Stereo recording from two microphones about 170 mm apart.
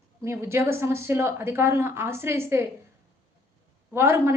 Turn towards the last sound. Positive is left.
turn(degrees=-15)  # may be behind; listen again after turning